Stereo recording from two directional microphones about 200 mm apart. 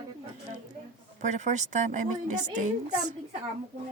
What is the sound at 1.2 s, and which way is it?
A woman's voice, 35° right (ahead or behind).